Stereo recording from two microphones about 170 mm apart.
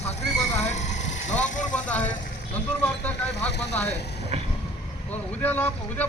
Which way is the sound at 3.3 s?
80° left.